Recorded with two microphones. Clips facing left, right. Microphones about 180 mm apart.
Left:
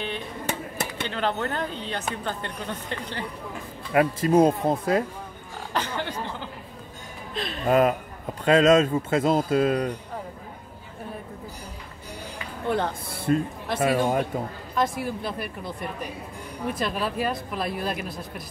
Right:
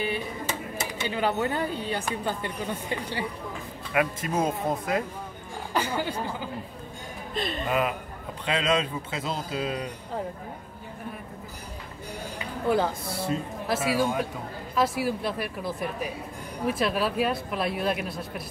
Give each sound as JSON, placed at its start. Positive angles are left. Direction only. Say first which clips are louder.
{"t": 0.5, "sound": "a sound", "louder": "left 2 dB", "side_deg": 60}
{"t": 1.0, "sound": "speech", "louder": "right 2 dB", "side_deg": -10}
{"t": 3.9, "sound": "speech", "louder": "left 7 dB", "side_deg": 35}
{"t": 5.7, "sound": "speech", "louder": "right 1 dB", "side_deg": -10}
{"t": 7.6, "sound": "speech", "louder": "left 9 dB", "side_deg": 40}
{"t": 12.6, "sound": "speech", "louder": "right 2 dB", "side_deg": -5}
{"t": 13.1, "sound": "speech", "louder": "left 5 dB", "side_deg": 55}
{"t": 13.7, "sound": "speech", "louder": "left 3 dB", "side_deg": -5}